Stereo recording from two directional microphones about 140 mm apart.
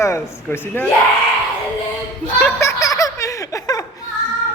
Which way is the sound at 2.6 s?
25° left (ahead or behind).